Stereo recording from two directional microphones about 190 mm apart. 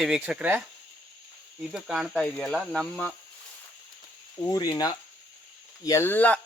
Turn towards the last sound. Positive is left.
turn(degrees=10)  # may be behind; listen again after turning